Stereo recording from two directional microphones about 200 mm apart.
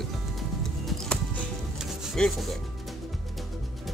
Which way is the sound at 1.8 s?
Centre (ahead or behind).